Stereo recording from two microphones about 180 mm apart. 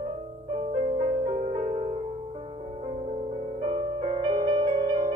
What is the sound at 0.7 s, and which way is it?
Music, 35° right (ahead or behind).